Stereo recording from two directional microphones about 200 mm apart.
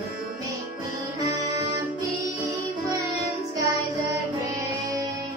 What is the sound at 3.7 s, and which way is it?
Music, 15° right (ahead or behind).